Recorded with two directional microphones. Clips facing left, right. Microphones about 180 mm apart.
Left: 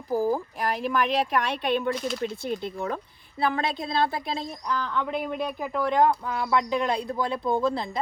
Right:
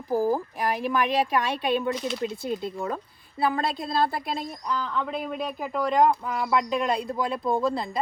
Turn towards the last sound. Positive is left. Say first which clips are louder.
# even
turn(degrees=0)  # may be behind; listen again after turning